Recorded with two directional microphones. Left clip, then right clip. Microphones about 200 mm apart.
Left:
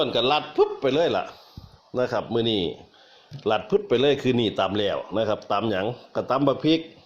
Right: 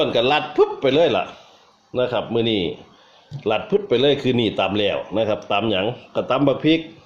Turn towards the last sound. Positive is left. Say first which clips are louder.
# right 4 dB
turn(degrees=20)  # may be behind; listen again after turning